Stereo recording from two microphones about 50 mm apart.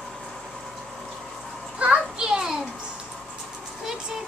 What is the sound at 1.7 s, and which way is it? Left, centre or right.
Children playing, right.